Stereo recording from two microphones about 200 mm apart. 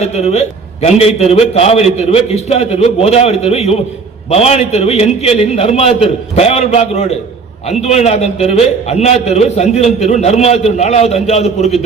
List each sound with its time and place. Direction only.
0.0 s a man's voice: 30° left (ahead or behind)